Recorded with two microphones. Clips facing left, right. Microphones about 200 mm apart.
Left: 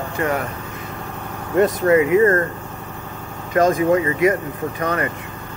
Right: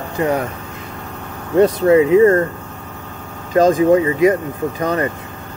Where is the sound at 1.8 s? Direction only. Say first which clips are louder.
Right 4 dB; 25° right (ahead or behind).